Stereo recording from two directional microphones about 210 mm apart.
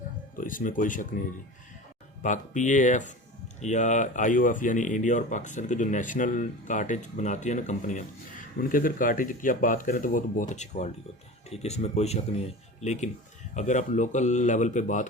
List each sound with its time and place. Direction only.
0.3 s speech: 40° left (ahead or behind)
2.2 s speech: 35° left (ahead or behind)